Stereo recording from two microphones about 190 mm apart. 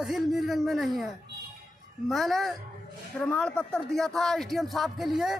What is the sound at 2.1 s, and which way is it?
Speech, centre (ahead or behind).